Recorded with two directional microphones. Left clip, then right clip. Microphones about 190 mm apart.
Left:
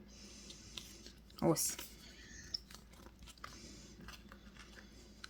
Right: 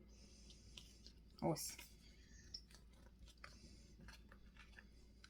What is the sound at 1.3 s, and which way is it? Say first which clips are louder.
Speech: left 9 dB; 30° left (ahead or behind).